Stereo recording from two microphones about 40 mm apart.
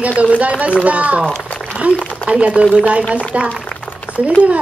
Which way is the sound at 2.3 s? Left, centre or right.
Right.